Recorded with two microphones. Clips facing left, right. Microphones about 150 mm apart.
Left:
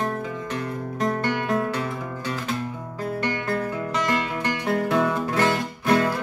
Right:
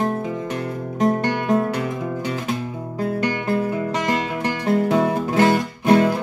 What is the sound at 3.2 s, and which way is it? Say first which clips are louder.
Music: right 3 dB; 20° right (ahead or behind).